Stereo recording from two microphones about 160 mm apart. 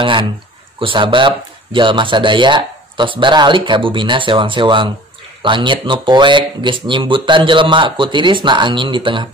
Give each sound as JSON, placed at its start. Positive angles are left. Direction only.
{"t": 0.0, "sound": "speech", "side_deg": -30}